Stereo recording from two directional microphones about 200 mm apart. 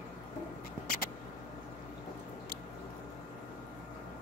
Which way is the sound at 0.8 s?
45° left (ahead or behind).